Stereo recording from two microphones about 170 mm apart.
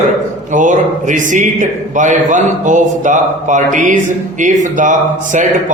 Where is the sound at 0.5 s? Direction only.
45° right (ahead or behind).